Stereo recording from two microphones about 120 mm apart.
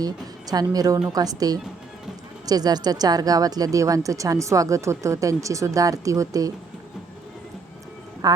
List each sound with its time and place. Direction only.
0.5 s a woman's voice: 30° right (ahead or behind)
8.2 s a woman's voice: 30° right (ahead or behind)